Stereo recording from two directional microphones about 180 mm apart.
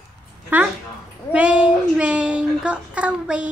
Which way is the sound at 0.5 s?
10° right (ahead or behind).